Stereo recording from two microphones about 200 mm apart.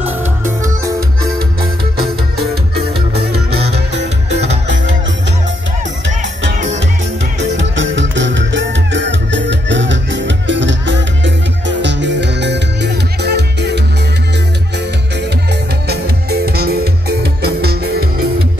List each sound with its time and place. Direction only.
3.9 s music: 35° right (ahead or behind)
7.3 s music: 65° right (ahead or behind)
15.9 s music: 50° right (ahead or behind)